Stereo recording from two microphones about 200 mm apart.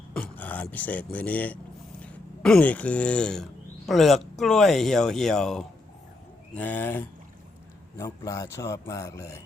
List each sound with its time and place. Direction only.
0.1 s speech: 5° left (ahead or behind)